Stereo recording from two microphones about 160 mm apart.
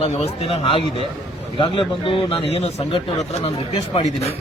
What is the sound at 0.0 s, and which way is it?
A man's voice, 35° left (ahead or behind).